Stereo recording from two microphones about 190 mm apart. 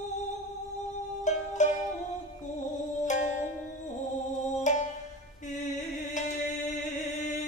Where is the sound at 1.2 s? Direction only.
40° left (ahead or behind).